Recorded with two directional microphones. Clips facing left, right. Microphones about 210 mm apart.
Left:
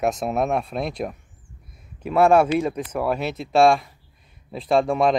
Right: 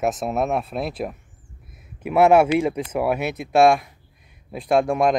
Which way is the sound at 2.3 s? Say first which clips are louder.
Right 1 dB; 10° right (ahead or behind).